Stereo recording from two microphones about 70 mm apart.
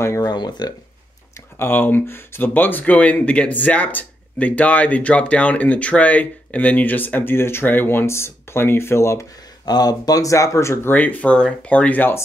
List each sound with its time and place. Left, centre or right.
0.2 s speech: left
1.6 s speech: left
9.7 s speech: left
10.9 s speech: left